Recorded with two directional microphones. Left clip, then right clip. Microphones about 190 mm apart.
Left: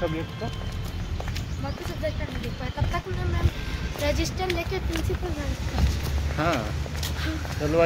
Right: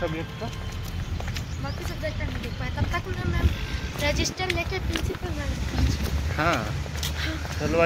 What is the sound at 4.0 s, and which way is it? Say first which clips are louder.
Speech: right 1 dB; 40° left (ahead or behind).